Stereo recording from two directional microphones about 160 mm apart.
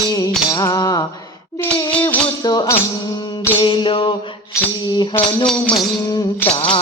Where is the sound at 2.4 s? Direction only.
25° left (ahead or behind).